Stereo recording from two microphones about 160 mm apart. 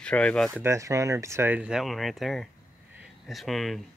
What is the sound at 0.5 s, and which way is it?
Speech, 15° right (ahead or behind).